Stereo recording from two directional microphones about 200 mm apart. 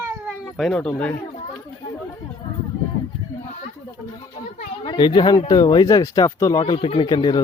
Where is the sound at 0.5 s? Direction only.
5° left (ahead or behind).